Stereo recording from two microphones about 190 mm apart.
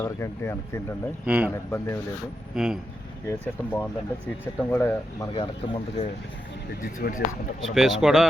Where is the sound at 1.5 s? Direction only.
15° left (ahead or behind).